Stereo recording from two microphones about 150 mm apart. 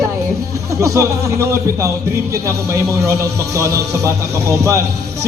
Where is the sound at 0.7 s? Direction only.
20° right (ahead or behind).